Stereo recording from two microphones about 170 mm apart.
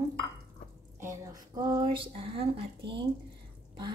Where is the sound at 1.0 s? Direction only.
15° right (ahead or behind).